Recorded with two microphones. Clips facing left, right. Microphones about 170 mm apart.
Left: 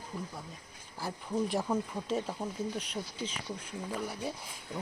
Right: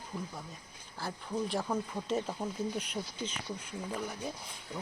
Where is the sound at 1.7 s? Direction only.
Centre (ahead or behind).